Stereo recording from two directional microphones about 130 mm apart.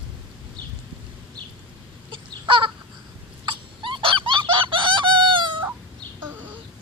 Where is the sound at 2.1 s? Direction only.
40° right (ahead or behind).